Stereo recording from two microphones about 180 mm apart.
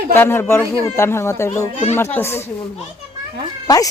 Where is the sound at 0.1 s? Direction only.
15° left (ahead or behind).